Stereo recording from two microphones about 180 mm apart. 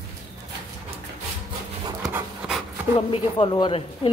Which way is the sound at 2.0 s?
Centre (ahead or behind).